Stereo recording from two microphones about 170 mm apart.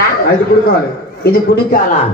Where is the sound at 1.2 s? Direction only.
65° left (ahead or behind).